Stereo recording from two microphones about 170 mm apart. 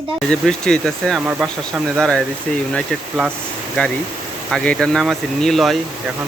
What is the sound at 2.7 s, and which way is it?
Speech, centre (ahead or behind).